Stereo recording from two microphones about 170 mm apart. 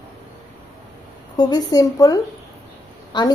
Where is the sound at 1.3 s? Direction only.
20° left (ahead or behind).